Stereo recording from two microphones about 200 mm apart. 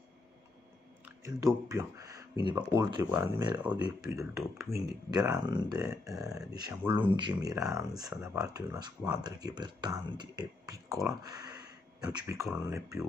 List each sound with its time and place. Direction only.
1.0 s speech: 15° right (ahead or behind)
12.4 s speech: 5° right (ahead or behind)